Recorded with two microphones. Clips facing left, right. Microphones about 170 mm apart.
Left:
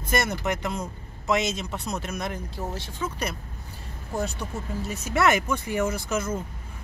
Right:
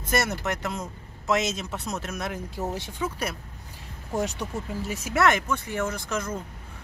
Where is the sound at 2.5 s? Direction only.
15° right (ahead or behind).